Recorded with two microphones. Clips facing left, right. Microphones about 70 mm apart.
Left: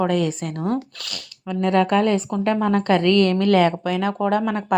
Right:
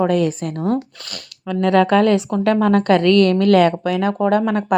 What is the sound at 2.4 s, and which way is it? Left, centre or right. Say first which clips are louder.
A woman's voice: right 4 dB; right.